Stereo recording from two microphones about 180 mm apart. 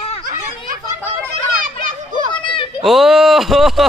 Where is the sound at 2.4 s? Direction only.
25° left (ahead or behind).